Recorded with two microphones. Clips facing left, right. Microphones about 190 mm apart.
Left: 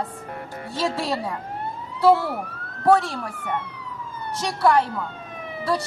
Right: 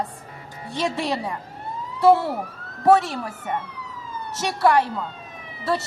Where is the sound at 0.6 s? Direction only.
Centre (ahead or behind).